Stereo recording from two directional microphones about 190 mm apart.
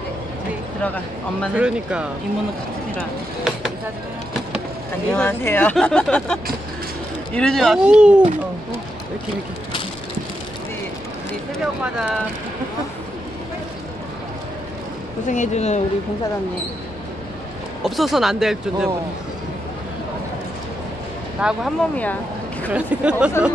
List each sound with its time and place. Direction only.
1.5 s speech: 5° right (ahead or behind)
5.1 s speech: 10° left (ahead or behind); by 8.3 s 5° right (ahead or behind)
11.6 s speech: 5° right (ahead or behind)
15.2 s speech: 40° left (ahead or behind)
17.8 s speech: centre (ahead or behind)
21.4 s speech: 5° right (ahead or behind)
22.7 s speech: 5° right (ahead or behind)